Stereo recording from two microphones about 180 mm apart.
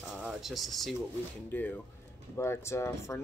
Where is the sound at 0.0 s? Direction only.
5° right (ahead or behind).